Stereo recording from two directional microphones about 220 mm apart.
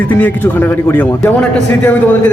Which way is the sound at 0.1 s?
10° left (ahead or behind).